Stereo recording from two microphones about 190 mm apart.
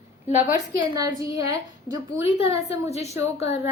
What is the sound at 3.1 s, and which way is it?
Speech, 15° right (ahead or behind).